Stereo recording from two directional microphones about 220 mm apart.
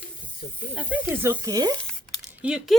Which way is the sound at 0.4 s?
45° left (ahead or behind).